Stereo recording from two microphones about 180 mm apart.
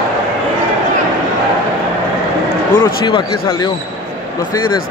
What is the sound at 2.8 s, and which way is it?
Speech, 25° left (ahead or behind).